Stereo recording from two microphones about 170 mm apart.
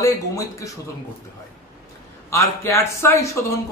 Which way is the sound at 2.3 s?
15° left (ahead or behind).